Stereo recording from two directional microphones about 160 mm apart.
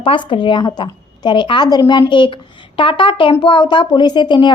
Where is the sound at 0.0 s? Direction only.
30° left (ahead or behind).